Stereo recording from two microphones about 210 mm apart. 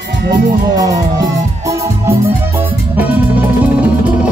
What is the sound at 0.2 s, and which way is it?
Speech, 50° right (ahead or behind).